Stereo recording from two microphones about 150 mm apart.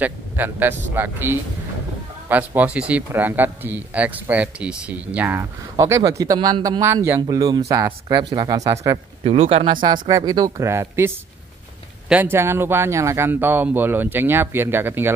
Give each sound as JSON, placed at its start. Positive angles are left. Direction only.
{"t": 0.0, "sound": "speech", "side_deg": -10}
{"t": 5.8, "sound": "speech", "side_deg": -20}
{"t": 6.8, "sound": "speech", "side_deg": -15}
{"t": 8.9, "sound": "speech", "side_deg": -40}